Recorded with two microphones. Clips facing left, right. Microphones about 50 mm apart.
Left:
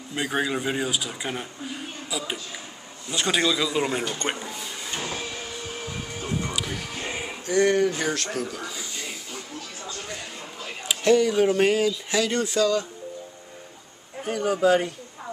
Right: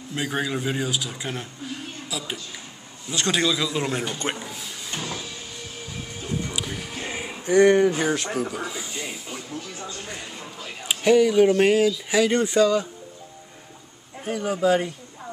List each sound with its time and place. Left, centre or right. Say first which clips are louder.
0.1 s speech: left 1 dB; centre
4.0 s a sound: even; centre
6.6 s music: even; centre
7.4 s speech: right 4 dB; right
10.9 s speech: right 2 dB; centre
12.3 s speech: right 3 dB; centre
14.2 s speech: left 1 dB; centre